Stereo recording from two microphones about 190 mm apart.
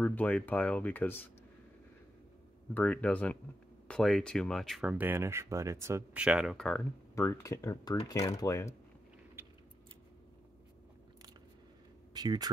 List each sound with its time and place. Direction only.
0.0 s speech: 10° left (ahead or behind)
2.7 s speech: 5° left (ahead or behind)
7.2 s speech: 15° left (ahead or behind)
12.1 s speech: 20° right (ahead or behind)